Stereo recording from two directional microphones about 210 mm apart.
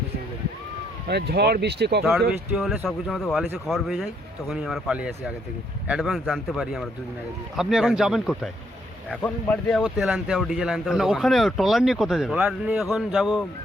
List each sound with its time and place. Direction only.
1.0 s speech: 50° right (ahead or behind)
2.6 s speech: centre (ahead or behind)